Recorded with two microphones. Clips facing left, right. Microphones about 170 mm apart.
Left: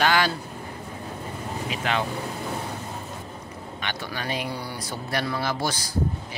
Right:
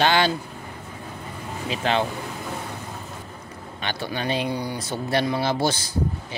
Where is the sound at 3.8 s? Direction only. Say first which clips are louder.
Right 5 dB; 30° right (ahead or behind).